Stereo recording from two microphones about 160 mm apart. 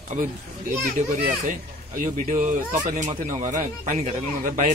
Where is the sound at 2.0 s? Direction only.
55° right (ahead or behind).